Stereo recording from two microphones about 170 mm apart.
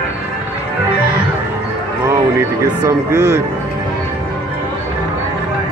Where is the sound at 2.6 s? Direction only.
20° right (ahead or behind).